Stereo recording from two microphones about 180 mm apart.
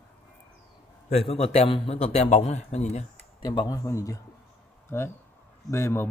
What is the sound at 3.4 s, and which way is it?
A man's voice, 20° left (ahead or behind).